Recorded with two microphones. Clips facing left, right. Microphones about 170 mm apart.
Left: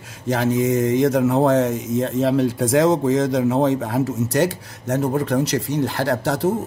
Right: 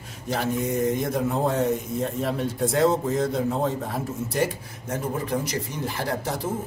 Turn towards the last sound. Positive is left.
turn(degrees=80)